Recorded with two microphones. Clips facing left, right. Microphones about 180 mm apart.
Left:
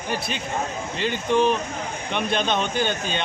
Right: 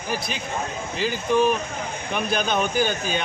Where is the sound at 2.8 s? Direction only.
5° right (ahead or behind).